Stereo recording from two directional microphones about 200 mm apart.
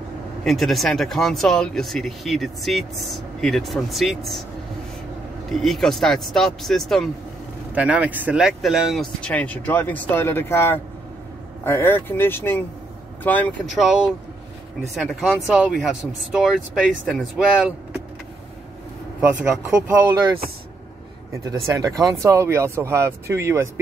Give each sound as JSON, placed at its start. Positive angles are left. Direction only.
{"t": 0.4, "sound": "speech", "side_deg": 0}
{"t": 5.5, "sound": "speech", "side_deg": 0}
{"t": 20.1, "sound": "speech", "side_deg": -20}
{"t": 21.6, "sound": "speech", "side_deg": -15}